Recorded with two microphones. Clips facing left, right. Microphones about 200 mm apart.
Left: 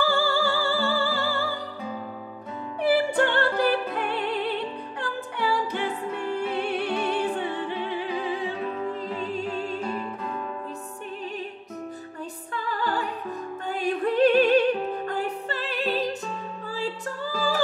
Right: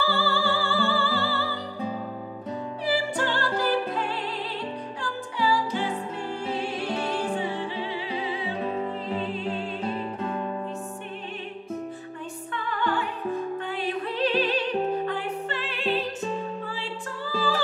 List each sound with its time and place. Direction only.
0.0 s music: 45° left (ahead or behind)
2.8 s music: 55° left (ahead or behind)
9.9 s music: 30° right (ahead or behind)
12.6 s music: 35° left (ahead or behind)